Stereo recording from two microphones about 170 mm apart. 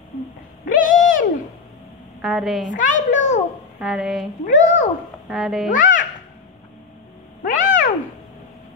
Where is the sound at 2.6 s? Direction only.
50° left (ahead or behind).